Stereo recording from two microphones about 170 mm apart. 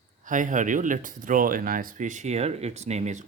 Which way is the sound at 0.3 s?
50° right (ahead or behind).